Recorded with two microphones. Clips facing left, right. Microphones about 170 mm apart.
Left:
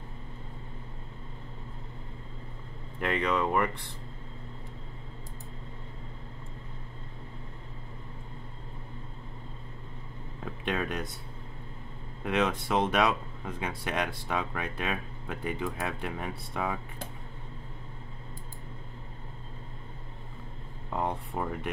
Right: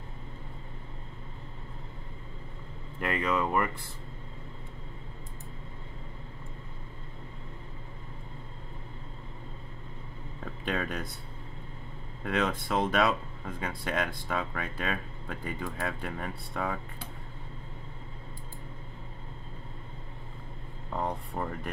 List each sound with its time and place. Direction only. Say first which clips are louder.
3.0 s speech: left 1 dB; 5° right (ahead or behind)
10.6 s speech: left 1 dB; centre (ahead or behind)
12.2 s speech: left 1 dB; centre (ahead or behind)
20.9 s speech: left 1 dB; centre (ahead or behind)